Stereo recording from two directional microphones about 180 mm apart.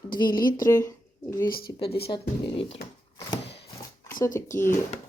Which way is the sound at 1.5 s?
55° left (ahead or behind).